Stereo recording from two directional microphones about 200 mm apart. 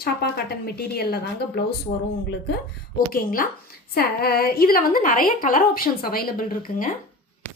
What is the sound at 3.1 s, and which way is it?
A woman's voice, 45° left (ahead or behind).